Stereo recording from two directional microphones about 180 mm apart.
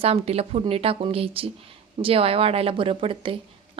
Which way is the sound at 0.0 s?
35° right (ahead or behind).